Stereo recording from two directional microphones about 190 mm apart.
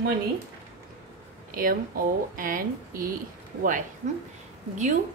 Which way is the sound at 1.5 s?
45° right (ahead or behind).